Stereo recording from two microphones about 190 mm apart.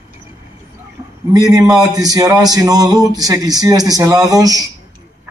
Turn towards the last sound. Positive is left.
turn(degrees=-20)  # may be behind; listen again after turning